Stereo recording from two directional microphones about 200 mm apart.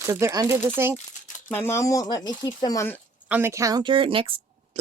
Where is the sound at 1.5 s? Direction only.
10° left (ahead or behind).